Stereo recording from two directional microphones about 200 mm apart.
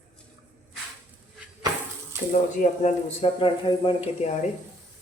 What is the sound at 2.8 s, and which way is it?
Speech, 30° left (ahead or behind).